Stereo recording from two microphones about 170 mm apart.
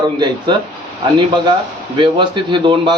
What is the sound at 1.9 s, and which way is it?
Speech, 30° right (ahead or behind).